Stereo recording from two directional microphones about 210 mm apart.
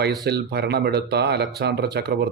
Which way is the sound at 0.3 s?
50° right (ahead or behind).